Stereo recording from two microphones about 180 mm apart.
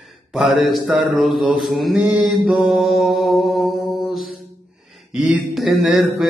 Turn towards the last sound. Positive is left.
turn(degrees=-5)  # may be behind; listen again after turning